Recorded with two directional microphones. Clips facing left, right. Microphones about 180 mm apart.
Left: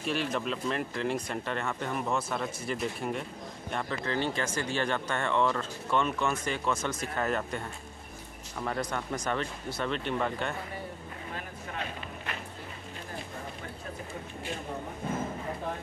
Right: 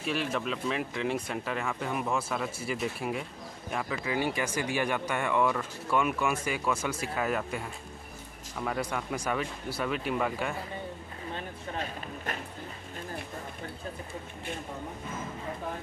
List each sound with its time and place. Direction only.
0.0 s speech: centre (ahead or behind)
11.3 s vehicle: 35° right (ahead or behind)